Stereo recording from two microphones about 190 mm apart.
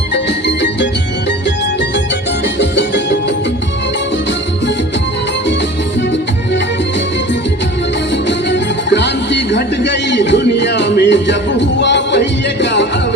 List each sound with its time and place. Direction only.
0.1 s music: 65° left (ahead or behind)
2.6 s music: 65° left (ahead or behind)
8.3 s music: 65° left (ahead or behind)